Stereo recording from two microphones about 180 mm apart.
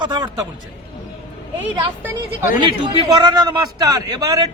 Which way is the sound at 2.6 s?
25° right (ahead or behind).